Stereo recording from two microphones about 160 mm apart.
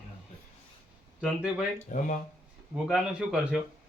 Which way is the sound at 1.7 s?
50° left (ahead or behind).